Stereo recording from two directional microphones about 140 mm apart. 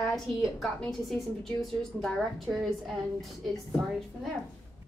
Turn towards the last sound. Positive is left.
turn(degrees=0)  # may be behind; listen again after turning